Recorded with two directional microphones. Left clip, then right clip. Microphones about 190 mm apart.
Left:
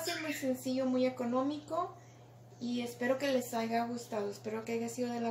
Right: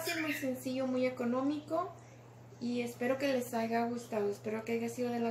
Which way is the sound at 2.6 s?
15° left (ahead or behind).